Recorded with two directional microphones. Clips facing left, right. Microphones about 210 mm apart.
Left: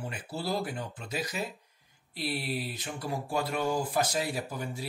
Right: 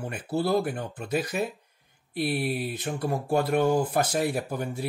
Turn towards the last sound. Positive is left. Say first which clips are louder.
# right 5 dB
turn(degrees=-55)  # may be behind; listen again after turning